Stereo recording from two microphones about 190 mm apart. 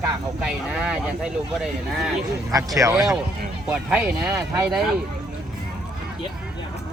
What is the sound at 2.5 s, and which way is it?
Speech, 20° right (ahead or behind).